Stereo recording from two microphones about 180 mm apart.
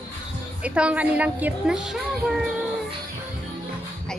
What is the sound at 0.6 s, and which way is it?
A woman's voice, 5° right (ahead or behind).